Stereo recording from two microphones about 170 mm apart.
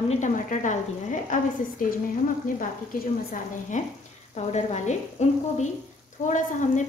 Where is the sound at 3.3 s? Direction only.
45° left (ahead or behind).